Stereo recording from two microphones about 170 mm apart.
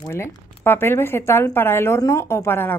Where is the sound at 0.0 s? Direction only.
15° left (ahead or behind).